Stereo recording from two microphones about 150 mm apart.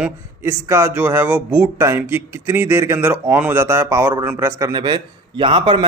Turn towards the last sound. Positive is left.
turn(degrees=-35)  # may be behind; listen again after turning